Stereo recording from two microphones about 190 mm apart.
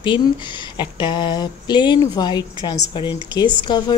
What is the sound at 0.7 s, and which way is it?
Speech, 25° left (ahead or behind).